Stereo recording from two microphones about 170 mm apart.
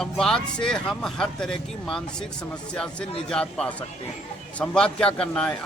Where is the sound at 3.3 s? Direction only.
5° left (ahead or behind).